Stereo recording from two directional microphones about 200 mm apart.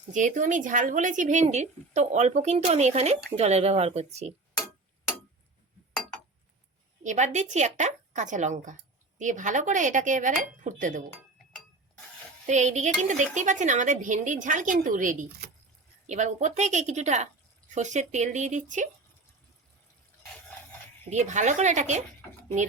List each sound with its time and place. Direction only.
0.1 s a woman's voice: 40° right (ahead or behind)
7.0 s a woman's voice: 35° right (ahead or behind)
12.5 s a woman's voice: 35° right (ahead or behind)
21.0 s a woman's voice: 35° right (ahead or behind)